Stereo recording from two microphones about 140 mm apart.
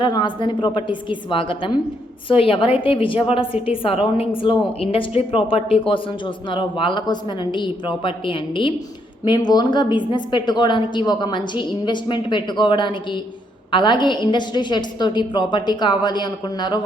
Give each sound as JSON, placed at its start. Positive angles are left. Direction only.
{"t": 0.0, "sound": "a woman's voice", "side_deg": 35}